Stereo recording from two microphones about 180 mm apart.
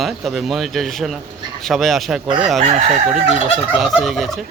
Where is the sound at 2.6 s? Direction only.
35° right (ahead or behind).